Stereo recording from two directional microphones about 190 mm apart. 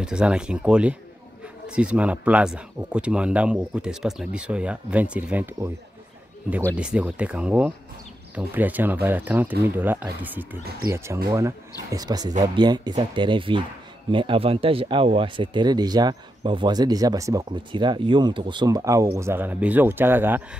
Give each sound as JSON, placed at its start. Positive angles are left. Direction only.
{"t": 0.0, "sound": "speech", "side_deg": -5}
{"t": 6.7, "sound": "speech", "side_deg": -5}